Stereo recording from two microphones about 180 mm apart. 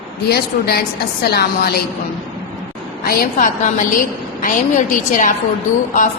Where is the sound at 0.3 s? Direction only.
60° left (ahead or behind).